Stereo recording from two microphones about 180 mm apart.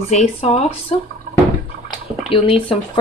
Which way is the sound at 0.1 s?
40° left (ahead or behind).